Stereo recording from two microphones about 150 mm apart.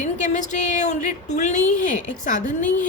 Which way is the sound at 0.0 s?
55° left (ahead or behind).